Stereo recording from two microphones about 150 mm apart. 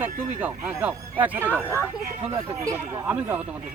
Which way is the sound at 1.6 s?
15° left (ahead or behind).